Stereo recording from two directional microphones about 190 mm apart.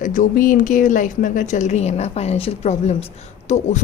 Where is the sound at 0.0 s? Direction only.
45° left (ahead or behind).